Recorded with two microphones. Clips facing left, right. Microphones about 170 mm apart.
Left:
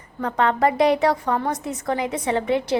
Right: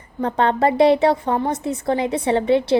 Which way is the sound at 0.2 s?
30° right (ahead or behind).